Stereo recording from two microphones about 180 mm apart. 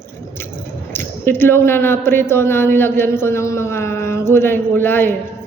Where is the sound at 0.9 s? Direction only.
10° left (ahead or behind).